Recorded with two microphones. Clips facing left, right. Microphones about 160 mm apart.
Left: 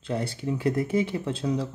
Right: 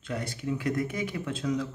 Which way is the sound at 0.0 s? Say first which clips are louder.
Left 4 dB; 30° left (ahead or behind).